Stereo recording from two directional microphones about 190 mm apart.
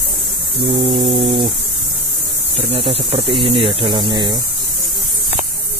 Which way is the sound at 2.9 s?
30° right (ahead or behind).